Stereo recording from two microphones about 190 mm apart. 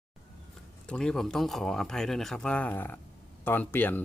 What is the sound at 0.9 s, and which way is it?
A man's voice, 5° left (ahead or behind).